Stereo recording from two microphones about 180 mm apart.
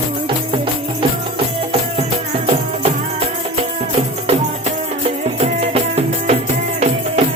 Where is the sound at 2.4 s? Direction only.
35° right (ahead or behind).